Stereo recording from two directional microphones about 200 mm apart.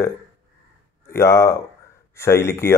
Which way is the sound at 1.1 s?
15° left (ahead or behind).